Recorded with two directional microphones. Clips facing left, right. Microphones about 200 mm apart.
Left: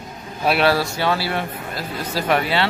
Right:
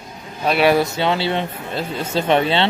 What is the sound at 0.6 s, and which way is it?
Speech, 20° right (ahead or behind).